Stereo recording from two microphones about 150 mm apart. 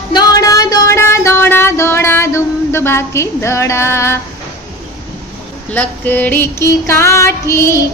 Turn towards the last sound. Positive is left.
turn(degrees=20)  # may be behind; listen again after turning